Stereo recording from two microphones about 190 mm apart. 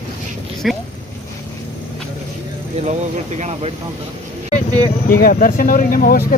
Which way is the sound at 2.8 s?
35° right (ahead or behind).